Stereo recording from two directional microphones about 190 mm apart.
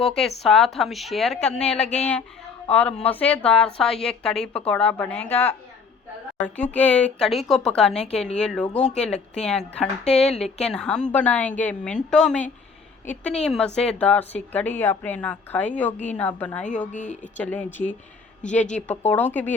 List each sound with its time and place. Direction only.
0.0 s a woman's voice: centre (ahead or behind)
1.8 s speech: 35° left (ahead or behind)
2.6 s a woman's voice: 10° left (ahead or behind)
16.9 s speech: 40° left (ahead or behind)
17.3 s a woman's voice: 5° left (ahead or behind)